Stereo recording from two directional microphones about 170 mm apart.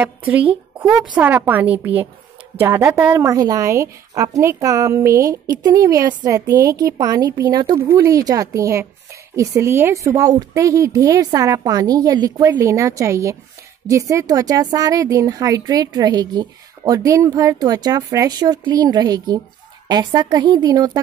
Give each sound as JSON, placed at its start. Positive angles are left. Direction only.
{"t": 1.1, "sound": "a woman's voice", "side_deg": -10}